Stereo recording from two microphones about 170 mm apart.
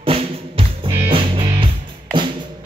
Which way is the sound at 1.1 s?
30° right (ahead or behind).